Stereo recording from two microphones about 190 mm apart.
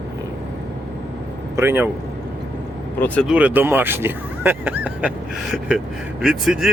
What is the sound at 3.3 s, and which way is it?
Speech, 10° right (ahead or behind).